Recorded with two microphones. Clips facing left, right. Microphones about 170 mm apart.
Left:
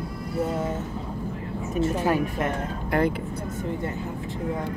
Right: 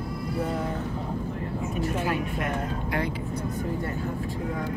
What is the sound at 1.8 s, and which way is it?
Speech, 35° left (ahead or behind).